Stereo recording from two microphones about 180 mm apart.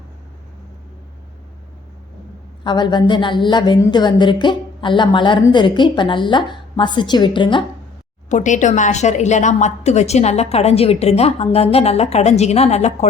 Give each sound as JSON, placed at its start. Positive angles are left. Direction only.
{"t": 2.6, "sound": "speech", "side_deg": 25}
{"t": 8.3, "sound": "a woman's voice", "side_deg": 40}